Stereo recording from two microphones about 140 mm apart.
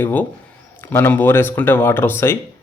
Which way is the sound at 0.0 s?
15° left (ahead or behind).